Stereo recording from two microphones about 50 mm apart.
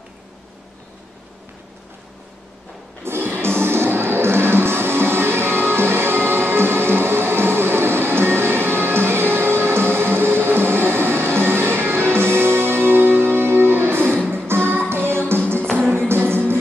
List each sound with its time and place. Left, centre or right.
3.0 s music: right
15.6 s music: centre
15.9 s music: right